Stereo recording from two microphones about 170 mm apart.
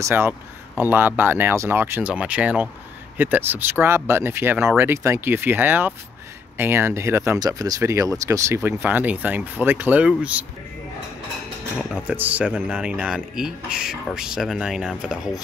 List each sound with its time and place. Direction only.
0.0 s speech: 15° right (ahead or behind)
11.9 s speech: 10° right (ahead or behind)